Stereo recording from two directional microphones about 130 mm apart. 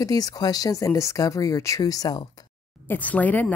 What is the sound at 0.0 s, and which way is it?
Speech, 30° left (ahead or behind).